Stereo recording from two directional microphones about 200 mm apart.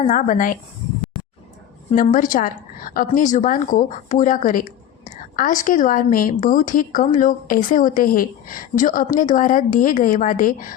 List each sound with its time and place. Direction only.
0.1 s a woman's voice: 40° left (ahead or behind)
1.9 s a woman's voice: 40° left (ahead or behind)